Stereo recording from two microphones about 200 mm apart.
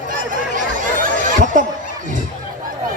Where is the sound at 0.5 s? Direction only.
40° right (ahead or behind).